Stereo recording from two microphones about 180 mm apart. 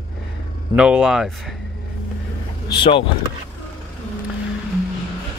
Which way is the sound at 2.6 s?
30° left (ahead or behind).